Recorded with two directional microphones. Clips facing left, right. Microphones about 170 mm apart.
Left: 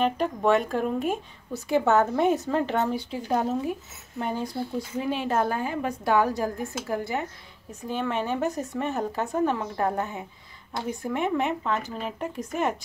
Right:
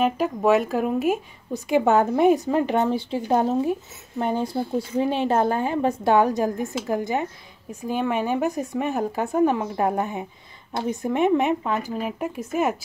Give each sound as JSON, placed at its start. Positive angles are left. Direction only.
{"t": 0.0, "sound": "a woman's voice", "side_deg": -5}